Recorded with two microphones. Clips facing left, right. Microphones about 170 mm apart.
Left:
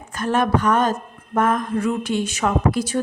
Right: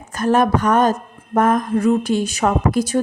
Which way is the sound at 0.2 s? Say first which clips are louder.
Right 4 dB; 40° right (ahead or behind).